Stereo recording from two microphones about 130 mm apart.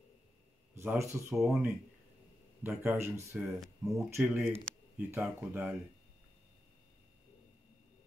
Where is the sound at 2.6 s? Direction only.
15° right (ahead or behind).